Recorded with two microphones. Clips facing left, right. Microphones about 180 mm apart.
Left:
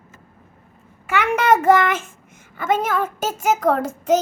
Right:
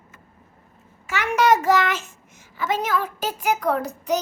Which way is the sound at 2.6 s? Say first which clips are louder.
Left 3 dB; 50° left (ahead or behind).